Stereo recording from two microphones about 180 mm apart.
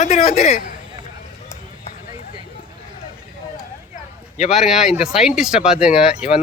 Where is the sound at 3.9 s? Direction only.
35° left (ahead or behind).